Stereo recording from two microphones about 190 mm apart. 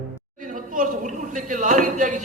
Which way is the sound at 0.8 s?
40° right (ahead or behind).